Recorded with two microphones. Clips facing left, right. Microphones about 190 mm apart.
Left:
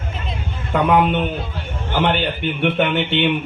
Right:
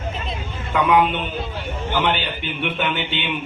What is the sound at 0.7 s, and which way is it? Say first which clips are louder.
A man's voice: left 2 dB; 50° left (ahead or behind).